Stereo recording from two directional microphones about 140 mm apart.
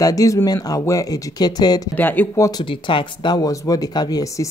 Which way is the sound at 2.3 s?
25° left (ahead or behind).